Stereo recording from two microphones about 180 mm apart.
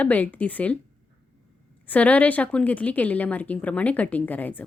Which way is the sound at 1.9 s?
10° left (ahead or behind).